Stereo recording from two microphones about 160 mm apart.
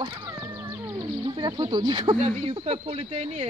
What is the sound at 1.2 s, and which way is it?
Speech, 30° right (ahead or behind).